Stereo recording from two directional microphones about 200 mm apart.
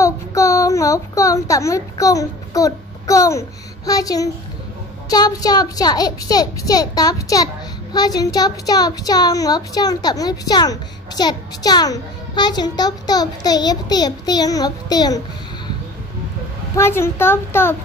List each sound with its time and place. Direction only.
0.0 s a child's voice: 15° left (ahead or behind)
16.7 s a woman's voice: 10° left (ahead or behind)